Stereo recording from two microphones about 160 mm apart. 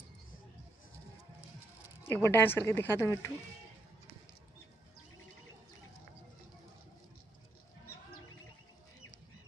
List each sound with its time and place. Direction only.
2.0 s speech: 15° left (ahead or behind)